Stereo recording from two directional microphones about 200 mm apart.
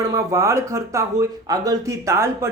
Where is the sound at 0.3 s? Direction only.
15° right (ahead or behind).